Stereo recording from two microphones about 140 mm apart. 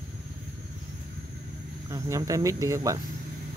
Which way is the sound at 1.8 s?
25° right (ahead or behind).